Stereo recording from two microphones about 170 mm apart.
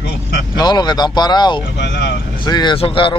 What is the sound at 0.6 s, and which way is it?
Speech, 25° left (ahead or behind).